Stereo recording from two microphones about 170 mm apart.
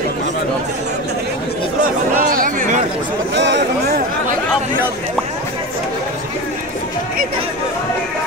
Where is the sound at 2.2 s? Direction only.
55° right (ahead or behind).